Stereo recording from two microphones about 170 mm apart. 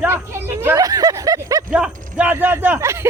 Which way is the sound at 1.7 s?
5° right (ahead or behind).